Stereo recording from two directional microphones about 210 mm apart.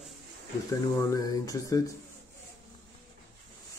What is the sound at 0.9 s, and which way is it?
Speech, 15° left (ahead or behind).